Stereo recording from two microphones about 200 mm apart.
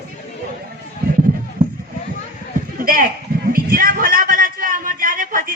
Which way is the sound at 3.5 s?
45° right (ahead or behind).